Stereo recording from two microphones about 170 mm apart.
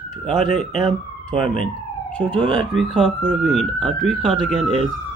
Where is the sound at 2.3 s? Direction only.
30° right (ahead or behind).